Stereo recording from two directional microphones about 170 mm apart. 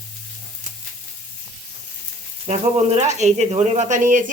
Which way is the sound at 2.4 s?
40° right (ahead or behind).